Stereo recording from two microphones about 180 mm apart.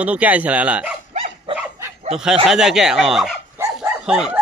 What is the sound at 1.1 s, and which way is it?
Dog, 35° right (ahead or behind).